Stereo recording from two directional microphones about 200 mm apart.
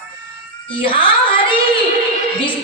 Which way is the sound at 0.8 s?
25° left (ahead or behind).